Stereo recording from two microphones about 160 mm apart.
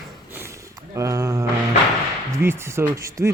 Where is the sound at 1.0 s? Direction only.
20° right (ahead or behind).